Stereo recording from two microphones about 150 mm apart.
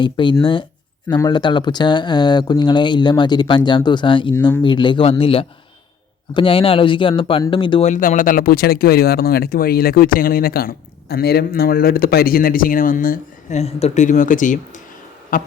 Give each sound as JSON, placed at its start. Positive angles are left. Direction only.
{"t": 0.0, "sound": "speech", "side_deg": 30}
{"t": 7.9, "sound": "speech", "side_deg": 60}
{"t": 13.6, "sound": "speech", "side_deg": 45}